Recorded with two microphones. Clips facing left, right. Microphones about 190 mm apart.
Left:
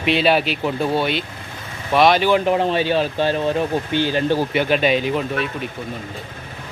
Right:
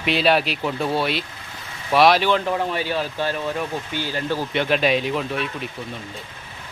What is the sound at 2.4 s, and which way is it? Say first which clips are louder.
Speech: left 5 dB; 20° left (ahead or behind).